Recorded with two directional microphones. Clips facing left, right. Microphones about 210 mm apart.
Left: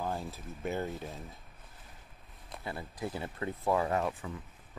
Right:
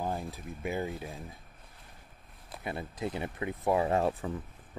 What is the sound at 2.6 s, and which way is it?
Speech, 20° right (ahead or behind).